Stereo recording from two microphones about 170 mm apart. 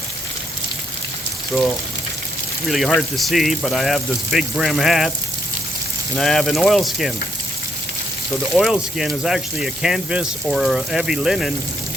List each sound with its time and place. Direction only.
2.6 s speech: centre (ahead or behind)
6.1 s speech: centre (ahead or behind)
8.5 s speech: centre (ahead or behind)